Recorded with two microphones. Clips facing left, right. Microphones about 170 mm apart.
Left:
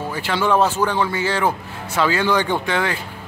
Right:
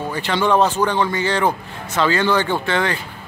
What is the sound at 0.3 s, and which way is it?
Speech, 5° left (ahead or behind).